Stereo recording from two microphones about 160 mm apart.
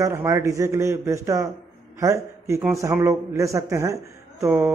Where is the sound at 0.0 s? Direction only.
20° right (ahead or behind).